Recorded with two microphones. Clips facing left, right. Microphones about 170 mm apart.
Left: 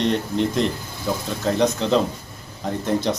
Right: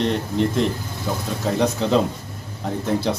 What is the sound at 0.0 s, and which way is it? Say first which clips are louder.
Speech: even; centre (ahead or behind).